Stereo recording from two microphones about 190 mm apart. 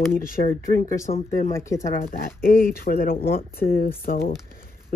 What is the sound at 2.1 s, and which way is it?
Speech, 50° left (ahead or behind).